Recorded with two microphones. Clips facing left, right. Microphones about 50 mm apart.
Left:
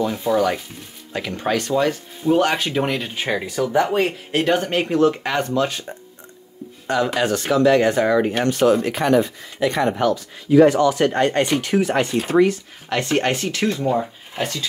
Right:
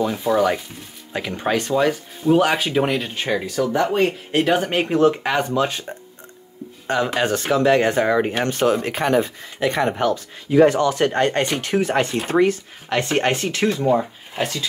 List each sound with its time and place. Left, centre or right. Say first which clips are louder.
0.0 s speech: even; centre
4.6 s speech: right 1 dB; centre
7.2 s speech: left 1 dB; right
12.9 s speech: even; right
13.7 s speech: right 3 dB; centre